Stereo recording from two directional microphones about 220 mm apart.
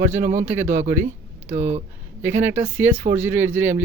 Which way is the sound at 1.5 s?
30° right (ahead or behind).